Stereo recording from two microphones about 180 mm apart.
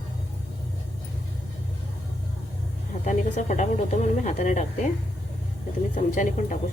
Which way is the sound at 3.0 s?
40° left (ahead or behind).